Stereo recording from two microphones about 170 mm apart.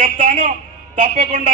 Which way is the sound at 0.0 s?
55° right (ahead or behind).